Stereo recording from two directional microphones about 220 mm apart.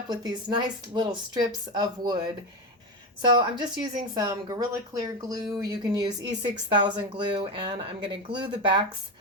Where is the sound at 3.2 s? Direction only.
20° right (ahead or behind).